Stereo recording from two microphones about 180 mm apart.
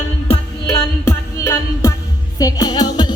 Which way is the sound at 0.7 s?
15° left (ahead or behind).